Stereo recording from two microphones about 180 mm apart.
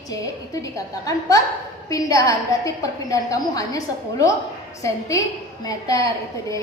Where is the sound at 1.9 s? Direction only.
20° left (ahead or behind).